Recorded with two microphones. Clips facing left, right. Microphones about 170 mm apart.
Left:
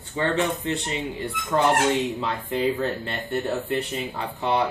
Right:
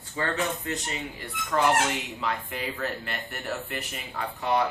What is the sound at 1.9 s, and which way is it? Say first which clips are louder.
Speech: left 6 dB; 30° left (ahead or behind).